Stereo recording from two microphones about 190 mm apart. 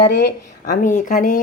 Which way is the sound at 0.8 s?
40° left (ahead or behind).